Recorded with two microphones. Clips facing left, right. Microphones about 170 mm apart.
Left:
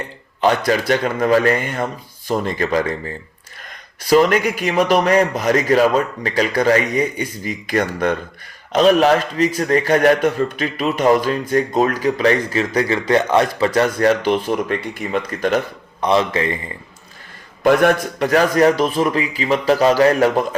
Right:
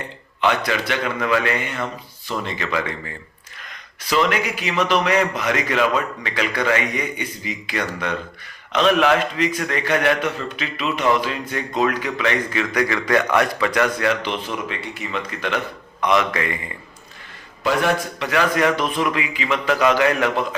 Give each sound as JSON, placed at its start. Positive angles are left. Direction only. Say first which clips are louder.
{"t": 0.4, "sound": "a man's voice", "louder": "left 5 dB", "side_deg": 40}
{"t": 17.6, "sound": "a man's voice", "louder": "left 6 dB", "side_deg": 50}